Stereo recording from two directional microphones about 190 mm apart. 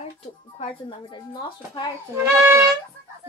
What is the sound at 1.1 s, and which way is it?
Speech, 25° left (ahead or behind).